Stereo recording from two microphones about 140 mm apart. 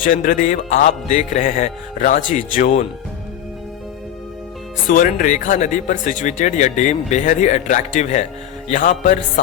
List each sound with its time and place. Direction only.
0.0 s speech: 75° left (ahead or behind)
4.9 s speech: 85° left; by 9.1 s 65° left (ahead or behind)